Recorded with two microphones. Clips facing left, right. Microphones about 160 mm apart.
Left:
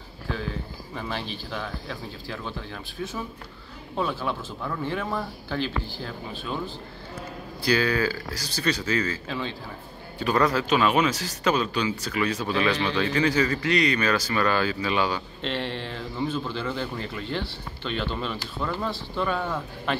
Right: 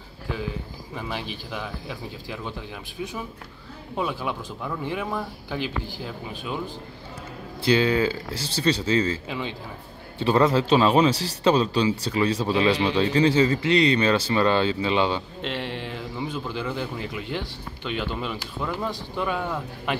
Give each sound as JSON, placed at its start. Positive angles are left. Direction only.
{"t": 0.3, "sound": "speech", "side_deg": -10}
{"t": 7.6, "sound": "a man's voice", "side_deg": -25}
{"t": 9.3, "sound": "speech", "side_deg": -15}
{"t": 10.1, "sound": "a man's voice", "side_deg": -25}
{"t": 15.4, "sound": "speech", "side_deg": -10}